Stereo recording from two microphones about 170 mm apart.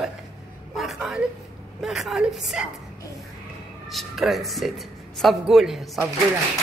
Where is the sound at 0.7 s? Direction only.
Centre (ahead or behind).